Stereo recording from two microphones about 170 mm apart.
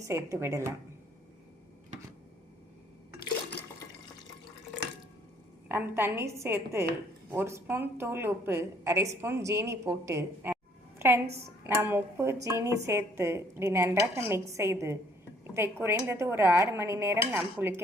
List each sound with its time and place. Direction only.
0.1 s a woman's voice: 15° right (ahead or behind)
5.6 s a woman's voice: 10° right (ahead or behind)
11.8 s a woman's voice: 15° right (ahead or behind)